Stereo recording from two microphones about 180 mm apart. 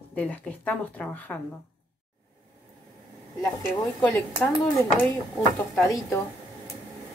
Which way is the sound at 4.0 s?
10° left (ahead or behind).